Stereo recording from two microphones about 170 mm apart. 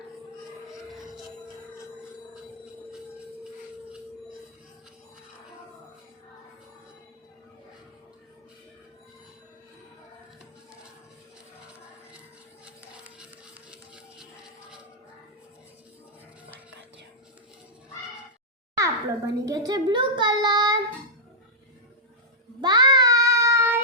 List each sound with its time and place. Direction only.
0.9 s music: centre (ahead or behind)
13.1 s a sound: 5° right (ahead or behind)
18.8 s a child's voice: 20° right (ahead or behind)
22.6 s child singing: 25° right (ahead or behind)